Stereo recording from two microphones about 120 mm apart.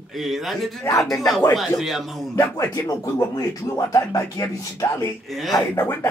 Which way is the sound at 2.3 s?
25° left (ahead or behind).